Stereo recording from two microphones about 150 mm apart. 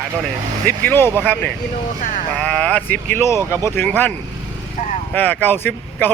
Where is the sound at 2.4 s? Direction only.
5° left (ahead or behind).